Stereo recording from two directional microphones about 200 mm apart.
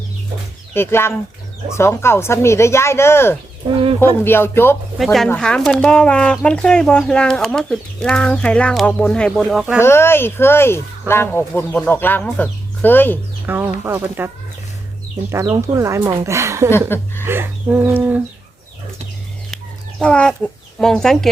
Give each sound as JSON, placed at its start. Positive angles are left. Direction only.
{"t": 0.7, "sound": "speech", "side_deg": 10}
{"t": 3.6, "sound": "speech", "side_deg": -25}
{"t": 4.0, "sound": "speech", "side_deg": 10}
{"t": 4.9, "sound": "speech", "side_deg": 0}
{"t": 9.8, "sound": "speech", "side_deg": 10}
{"t": 13.5, "sound": "speech", "side_deg": -10}
{"t": 15.3, "sound": "speech", "side_deg": -15}
{"t": 20.0, "sound": "speech", "side_deg": 5}